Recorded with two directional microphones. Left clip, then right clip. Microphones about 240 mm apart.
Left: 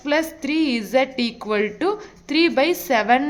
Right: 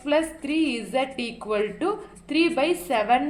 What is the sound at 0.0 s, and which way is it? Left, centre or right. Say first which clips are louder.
A woman's voice: left 2 dB; left.